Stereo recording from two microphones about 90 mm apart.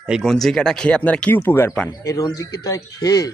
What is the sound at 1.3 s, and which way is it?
Speech, 30° left (ahead or behind).